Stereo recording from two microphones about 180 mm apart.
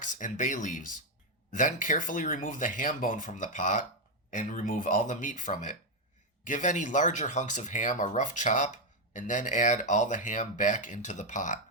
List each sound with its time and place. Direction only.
0.0 s speech: 45° left (ahead or behind)